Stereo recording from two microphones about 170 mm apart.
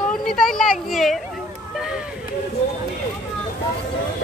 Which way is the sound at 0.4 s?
Centre (ahead or behind).